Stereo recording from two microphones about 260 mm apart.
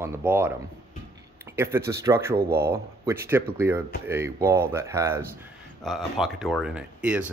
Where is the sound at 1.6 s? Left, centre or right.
Centre.